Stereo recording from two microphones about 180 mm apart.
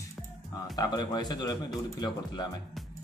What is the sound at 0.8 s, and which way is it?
Speech, 25° left (ahead or behind).